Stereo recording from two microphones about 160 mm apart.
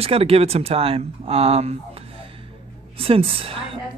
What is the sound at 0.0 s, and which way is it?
Speech, 35° right (ahead or behind).